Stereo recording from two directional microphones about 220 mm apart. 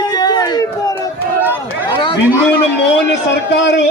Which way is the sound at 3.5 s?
55° left (ahead or behind).